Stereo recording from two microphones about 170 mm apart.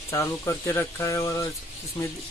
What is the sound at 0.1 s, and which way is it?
Speech, 15° left (ahead or behind).